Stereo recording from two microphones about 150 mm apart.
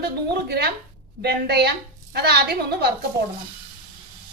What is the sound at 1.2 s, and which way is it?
A woman's voice, 90° right.